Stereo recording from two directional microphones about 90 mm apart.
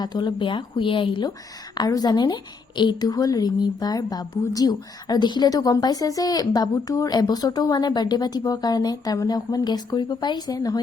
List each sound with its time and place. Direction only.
0.0 s speech: 55° left (ahead or behind)
1.7 s a woman's voice: 45° left (ahead or behind)